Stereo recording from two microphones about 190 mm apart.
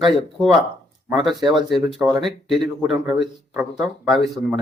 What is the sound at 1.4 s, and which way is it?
Speech, 25° right (ahead or behind).